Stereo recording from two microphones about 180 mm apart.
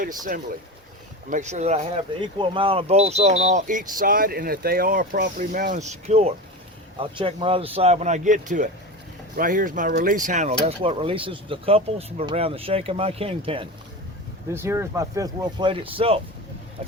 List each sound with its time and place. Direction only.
1.3 s speech: 40° right (ahead or behind)
14.5 s speech: 15° right (ahead or behind); by 16.2 s 30° right (ahead or behind)